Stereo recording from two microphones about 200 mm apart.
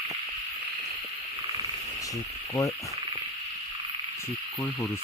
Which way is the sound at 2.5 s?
15° left (ahead or behind).